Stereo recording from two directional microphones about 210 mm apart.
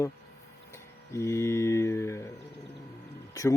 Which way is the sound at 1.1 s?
15° left (ahead or behind).